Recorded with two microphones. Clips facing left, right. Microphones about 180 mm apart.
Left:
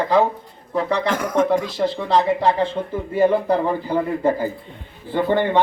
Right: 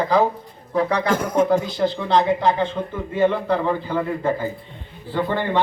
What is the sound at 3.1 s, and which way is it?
Speech, 10° left (ahead or behind).